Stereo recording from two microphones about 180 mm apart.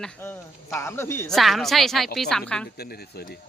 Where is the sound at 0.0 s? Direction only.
10° left (ahead or behind).